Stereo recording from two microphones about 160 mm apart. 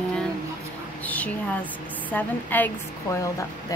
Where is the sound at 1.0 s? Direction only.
10° left (ahead or behind).